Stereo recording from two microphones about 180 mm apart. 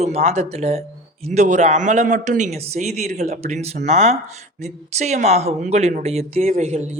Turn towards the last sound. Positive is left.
turn(degrees=-35)  # may be behind; listen again after turning